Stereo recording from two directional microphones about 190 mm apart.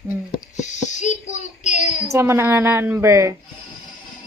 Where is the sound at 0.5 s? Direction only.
40° left (ahead or behind).